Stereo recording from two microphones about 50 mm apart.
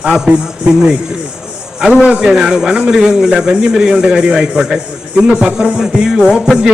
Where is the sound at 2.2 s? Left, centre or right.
Centre.